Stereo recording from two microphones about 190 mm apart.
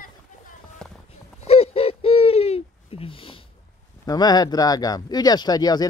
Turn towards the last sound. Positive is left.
turn(degrees=20)  # may be behind; listen again after turning